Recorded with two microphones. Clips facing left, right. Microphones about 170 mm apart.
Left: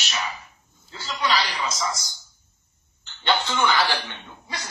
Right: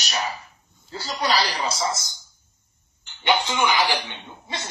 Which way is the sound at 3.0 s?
15° right (ahead or behind).